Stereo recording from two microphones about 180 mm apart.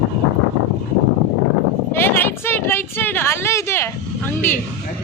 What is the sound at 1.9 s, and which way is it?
Speech, 10° left (ahead or behind).